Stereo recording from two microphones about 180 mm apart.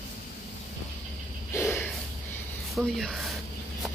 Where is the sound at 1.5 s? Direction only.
15° left (ahead or behind).